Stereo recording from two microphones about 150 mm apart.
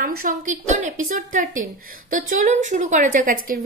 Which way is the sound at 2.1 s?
60° right (ahead or behind).